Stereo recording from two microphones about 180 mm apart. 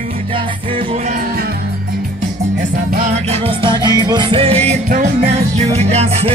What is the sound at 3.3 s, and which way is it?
Music, 25° right (ahead or behind).